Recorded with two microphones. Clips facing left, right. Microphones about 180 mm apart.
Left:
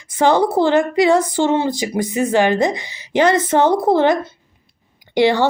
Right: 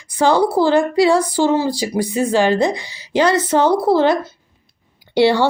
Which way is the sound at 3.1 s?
50° left (ahead or behind).